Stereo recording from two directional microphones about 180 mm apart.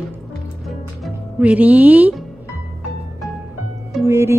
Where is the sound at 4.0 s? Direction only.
15° right (ahead or behind).